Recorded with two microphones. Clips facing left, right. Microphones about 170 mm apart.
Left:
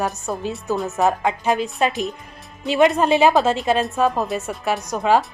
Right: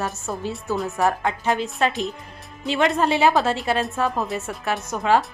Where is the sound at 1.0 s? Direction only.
20° left (ahead or behind).